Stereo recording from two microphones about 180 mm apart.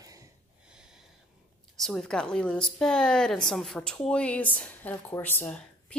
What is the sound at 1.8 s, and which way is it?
A woman's voice, centre (ahead or behind).